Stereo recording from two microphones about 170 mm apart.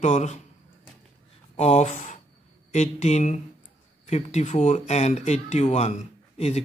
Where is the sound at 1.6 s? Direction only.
40° left (ahead or behind).